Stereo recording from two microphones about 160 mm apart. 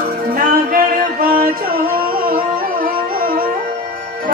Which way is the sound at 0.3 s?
60° right (ahead or behind).